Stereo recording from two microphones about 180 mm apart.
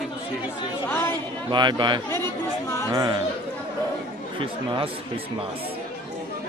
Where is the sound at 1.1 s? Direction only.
25° right (ahead or behind).